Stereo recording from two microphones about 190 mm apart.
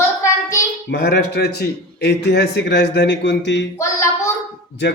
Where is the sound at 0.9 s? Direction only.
60° left (ahead or behind).